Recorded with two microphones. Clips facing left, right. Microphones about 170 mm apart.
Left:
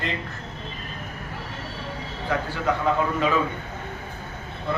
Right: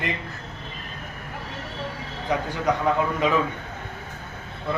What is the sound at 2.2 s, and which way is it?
A man's voice, 15° right (ahead or behind).